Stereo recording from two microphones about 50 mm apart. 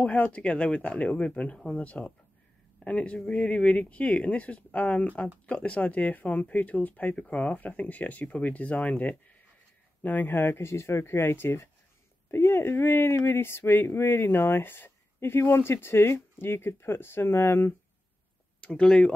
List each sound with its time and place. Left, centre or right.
0.0 s speech: left
13.1 s speech: left
18.6 s speech: left